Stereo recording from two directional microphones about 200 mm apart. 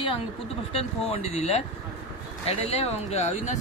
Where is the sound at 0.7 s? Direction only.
30° left (ahead or behind).